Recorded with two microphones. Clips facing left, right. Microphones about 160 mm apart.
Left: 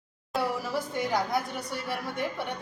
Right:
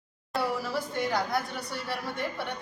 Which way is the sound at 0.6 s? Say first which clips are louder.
Even; 15° left (ahead or behind).